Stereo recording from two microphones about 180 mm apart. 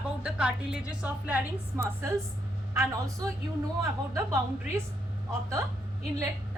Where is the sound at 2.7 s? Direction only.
15° right (ahead or behind).